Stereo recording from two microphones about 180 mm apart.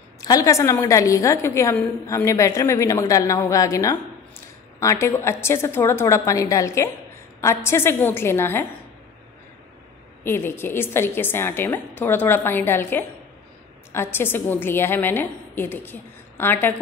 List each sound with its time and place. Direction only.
0.2 s a woman's voice: 20° left (ahead or behind)
10.2 s a woman's voice: 15° left (ahead or behind)